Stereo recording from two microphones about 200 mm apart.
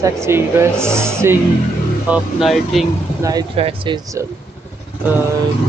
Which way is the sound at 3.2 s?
20° right (ahead or behind).